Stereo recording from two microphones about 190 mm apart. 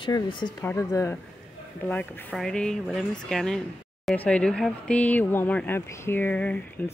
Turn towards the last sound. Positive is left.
turn(degrees=5)  # may be behind; listen again after turning